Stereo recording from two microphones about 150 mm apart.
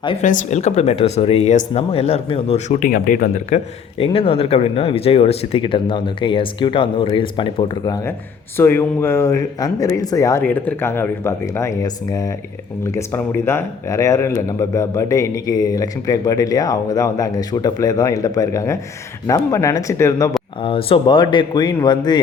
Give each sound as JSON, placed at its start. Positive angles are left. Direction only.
{"t": 0.2, "sound": "speech", "side_deg": 50}
{"t": 2.8, "sound": "speech", "side_deg": 65}
{"t": 3.9, "sound": "speech", "side_deg": 40}
{"t": 20.6, "sound": "speech", "side_deg": 35}